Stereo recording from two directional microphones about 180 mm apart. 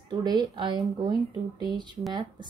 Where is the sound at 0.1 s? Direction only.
25° right (ahead or behind).